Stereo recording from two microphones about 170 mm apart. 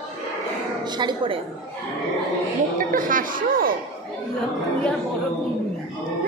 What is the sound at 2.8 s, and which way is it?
Speech, 55° right (ahead or behind).